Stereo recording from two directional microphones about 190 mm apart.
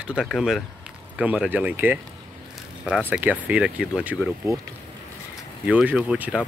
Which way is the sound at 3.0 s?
10° right (ahead or behind).